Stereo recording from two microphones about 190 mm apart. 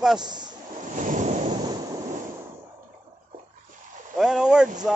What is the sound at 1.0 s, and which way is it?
Waves, 40° right (ahead or behind).